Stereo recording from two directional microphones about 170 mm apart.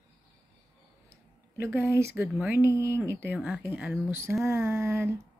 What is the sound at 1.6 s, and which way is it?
Speech, 15° right (ahead or behind).